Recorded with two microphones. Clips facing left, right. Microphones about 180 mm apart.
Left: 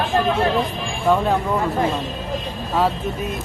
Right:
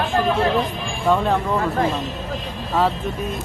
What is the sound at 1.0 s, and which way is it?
Speech, centre (ahead or behind).